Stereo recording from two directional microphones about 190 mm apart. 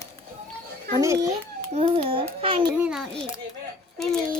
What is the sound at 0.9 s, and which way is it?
Speech, 15° right (ahead or behind).